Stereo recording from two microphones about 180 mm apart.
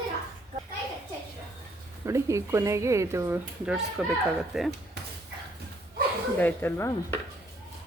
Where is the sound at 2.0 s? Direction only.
15° right (ahead or behind); by 4.7 s centre (ahead or behind).